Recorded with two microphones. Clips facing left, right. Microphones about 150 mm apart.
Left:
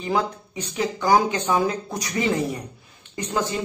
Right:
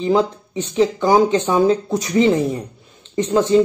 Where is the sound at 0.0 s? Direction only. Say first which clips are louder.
Right 7 dB; 20° right (ahead or behind).